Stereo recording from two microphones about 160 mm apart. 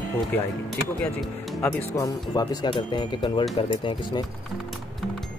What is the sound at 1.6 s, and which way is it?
Speech, 20° left (ahead or behind).